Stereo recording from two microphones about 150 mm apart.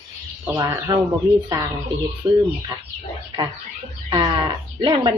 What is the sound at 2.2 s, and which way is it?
Speech, 25° right (ahead or behind).